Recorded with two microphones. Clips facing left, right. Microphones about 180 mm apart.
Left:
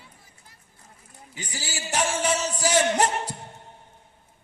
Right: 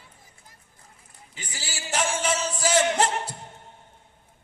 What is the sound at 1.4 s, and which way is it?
Speech, 40° left (ahead or behind).